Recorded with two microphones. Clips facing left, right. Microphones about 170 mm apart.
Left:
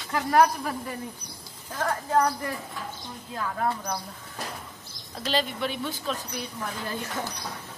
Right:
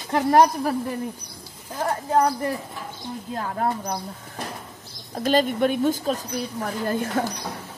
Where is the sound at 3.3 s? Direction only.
35° right (ahead or behind).